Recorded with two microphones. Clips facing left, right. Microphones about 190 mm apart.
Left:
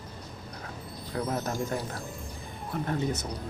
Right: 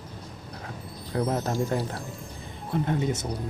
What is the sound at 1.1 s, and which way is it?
Speech, 20° right (ahead or behind).